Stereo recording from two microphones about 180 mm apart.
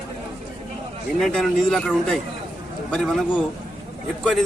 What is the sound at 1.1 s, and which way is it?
A man's voice, centre (ahead or behind).